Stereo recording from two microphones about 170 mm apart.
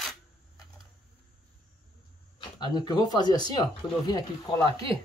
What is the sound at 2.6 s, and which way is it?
Speech, 25° left (ahead or behind).